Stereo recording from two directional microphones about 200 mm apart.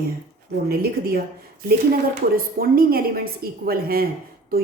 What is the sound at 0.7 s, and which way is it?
Speech, 50° right (ahead or behind).